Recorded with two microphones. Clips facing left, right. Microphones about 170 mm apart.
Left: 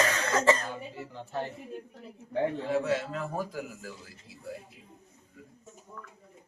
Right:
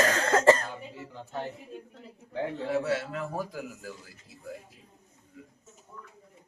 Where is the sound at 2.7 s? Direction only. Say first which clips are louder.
Even; 5° right (ahead or behind).